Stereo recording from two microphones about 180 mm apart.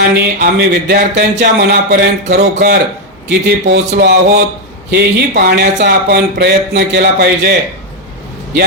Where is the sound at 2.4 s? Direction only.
45° right (ahead or behind).